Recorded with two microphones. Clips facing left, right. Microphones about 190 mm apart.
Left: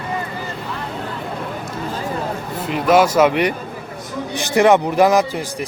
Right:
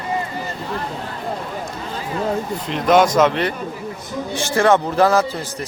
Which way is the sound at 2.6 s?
5° left (ahead or behind).